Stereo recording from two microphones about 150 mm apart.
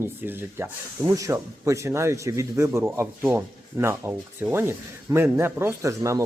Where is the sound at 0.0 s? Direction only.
15° right (ahead or behind).